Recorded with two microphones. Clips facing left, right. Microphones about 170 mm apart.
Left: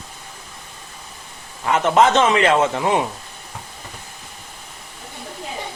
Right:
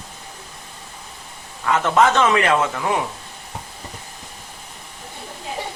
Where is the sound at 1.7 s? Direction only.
20° left (ahead or behind).